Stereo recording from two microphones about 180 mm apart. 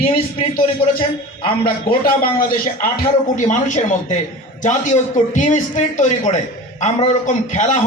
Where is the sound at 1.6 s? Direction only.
55° left (ahead or behind).